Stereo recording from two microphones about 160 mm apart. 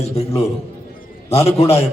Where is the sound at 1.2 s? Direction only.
40° left (ahead or behind).